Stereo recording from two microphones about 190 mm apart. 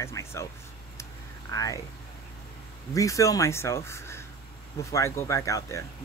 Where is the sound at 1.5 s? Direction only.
20° left (ahead or behind).